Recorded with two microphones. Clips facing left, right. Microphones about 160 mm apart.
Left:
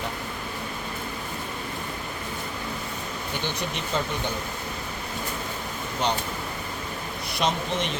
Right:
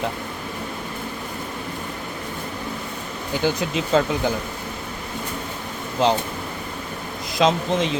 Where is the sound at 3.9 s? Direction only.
90° right.